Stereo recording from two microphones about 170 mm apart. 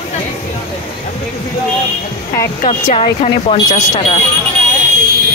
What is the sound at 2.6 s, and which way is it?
Speech, 40° left (ahead or behind).